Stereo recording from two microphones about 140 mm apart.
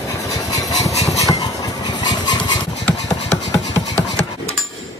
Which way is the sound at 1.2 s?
25° left (ahead or behind).